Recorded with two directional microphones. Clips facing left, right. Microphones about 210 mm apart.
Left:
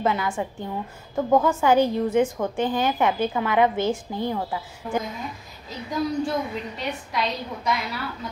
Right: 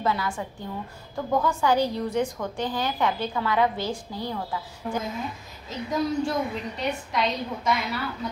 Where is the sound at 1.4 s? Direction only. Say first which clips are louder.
Left 4 dB; 20° left (ahead or behind).